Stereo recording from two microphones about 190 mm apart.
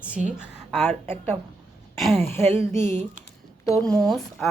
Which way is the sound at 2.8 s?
40° right (ahead or behind).